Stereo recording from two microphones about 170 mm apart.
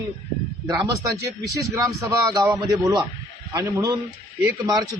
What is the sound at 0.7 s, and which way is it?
A man's voice, 25° right (ahead or behind).